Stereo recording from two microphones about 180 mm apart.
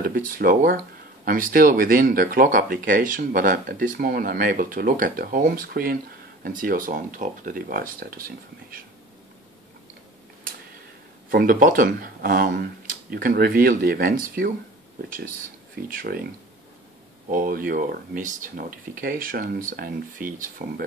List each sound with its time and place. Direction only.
0.0 s speech: 50° right (ahead or behind)
11.2 s speech: 50° right (ahead or behind)
15.9 s speech: 50° right (ahead or behind)
17.3 s speech: 50° right (ahead or behind)